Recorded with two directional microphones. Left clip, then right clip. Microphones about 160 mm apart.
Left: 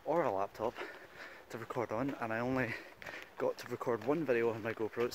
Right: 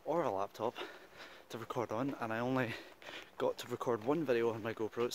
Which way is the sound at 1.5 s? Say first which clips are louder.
Left 1 dB; 25° right (ahead or behind).